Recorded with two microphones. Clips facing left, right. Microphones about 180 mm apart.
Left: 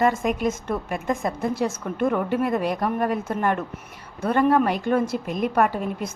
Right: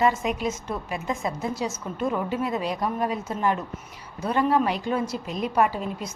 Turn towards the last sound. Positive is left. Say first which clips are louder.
# left 2 dB
turn(degrees=55)  # may be behind; listen again after turning